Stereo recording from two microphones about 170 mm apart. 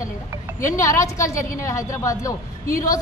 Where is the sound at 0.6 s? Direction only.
15° left (ahead or behind).